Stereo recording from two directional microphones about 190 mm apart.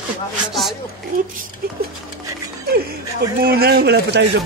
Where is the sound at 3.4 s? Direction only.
55° right (ahead or behind).